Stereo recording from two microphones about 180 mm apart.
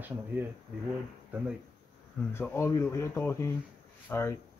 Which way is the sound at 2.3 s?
10° left (ahead or behind).